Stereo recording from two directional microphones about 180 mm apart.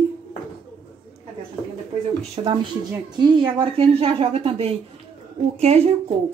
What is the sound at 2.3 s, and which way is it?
Speech, 30° right (ahead or behind).